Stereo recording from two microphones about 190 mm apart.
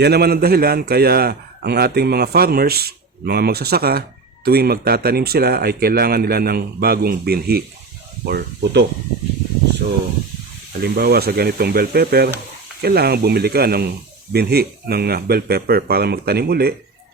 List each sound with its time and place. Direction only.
0.0 s a man's voice: 55° right (ahead or behind)
10.7 s a man's voice: 55° right (ahead or behind)